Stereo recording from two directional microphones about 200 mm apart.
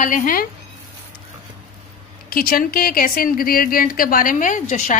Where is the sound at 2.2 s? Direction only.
45° left (ahead or behind).